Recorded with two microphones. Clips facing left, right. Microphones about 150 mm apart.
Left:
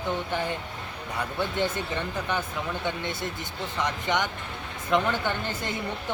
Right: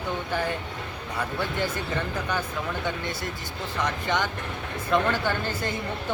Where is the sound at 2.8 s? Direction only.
20° left (ahead or behind).